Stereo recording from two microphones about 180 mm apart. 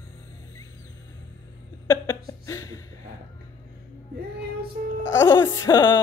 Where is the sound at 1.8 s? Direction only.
20° left (ahead or behind).